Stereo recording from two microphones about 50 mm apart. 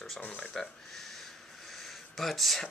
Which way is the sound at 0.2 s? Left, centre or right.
Left.